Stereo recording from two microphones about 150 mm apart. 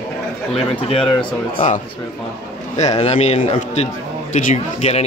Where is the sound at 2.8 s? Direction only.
45° left (ahead or behind).